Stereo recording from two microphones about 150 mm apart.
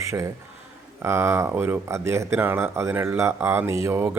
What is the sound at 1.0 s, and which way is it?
Speech, 15° right (ahead or behind).